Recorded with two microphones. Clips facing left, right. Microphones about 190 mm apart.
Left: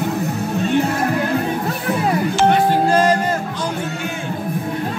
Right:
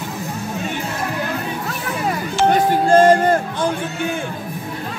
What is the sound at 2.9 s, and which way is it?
Music, 50° right (ahead or behind).